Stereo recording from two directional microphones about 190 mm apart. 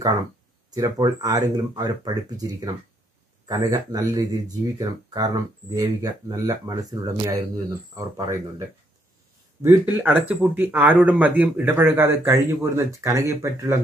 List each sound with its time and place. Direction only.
0.7 s a man's voice: 20° right (ahead or behind)